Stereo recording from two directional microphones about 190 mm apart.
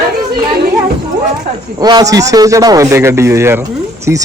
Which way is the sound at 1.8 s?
20° right (ahead or behind).